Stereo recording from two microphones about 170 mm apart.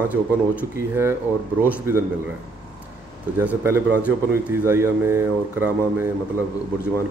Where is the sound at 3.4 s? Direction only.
15° right (ahead or behind).